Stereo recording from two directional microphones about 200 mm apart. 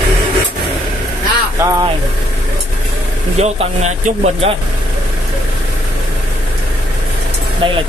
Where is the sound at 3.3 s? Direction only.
35° right (ahead or behind).